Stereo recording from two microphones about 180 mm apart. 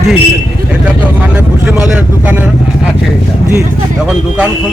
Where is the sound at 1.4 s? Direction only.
5° right (ahead or behind).